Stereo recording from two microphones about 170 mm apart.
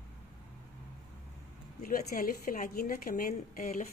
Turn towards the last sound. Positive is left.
turn(degrees=50)  # may be behind; listen again after turning